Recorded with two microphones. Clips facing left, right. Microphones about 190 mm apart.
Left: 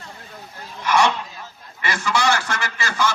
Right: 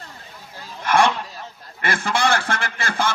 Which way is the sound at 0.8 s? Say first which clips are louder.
Right 1 dB; 55° right (ahead or behind).